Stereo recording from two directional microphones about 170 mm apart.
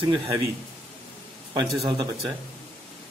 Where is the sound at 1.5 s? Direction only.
25° right (ahead or behind).